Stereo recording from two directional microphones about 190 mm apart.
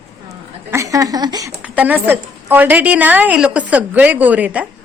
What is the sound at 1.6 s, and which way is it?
A woman's voice, 5° right (ahead or behind).